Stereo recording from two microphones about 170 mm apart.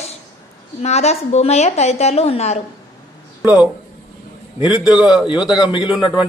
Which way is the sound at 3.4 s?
10° right (ahead or behind).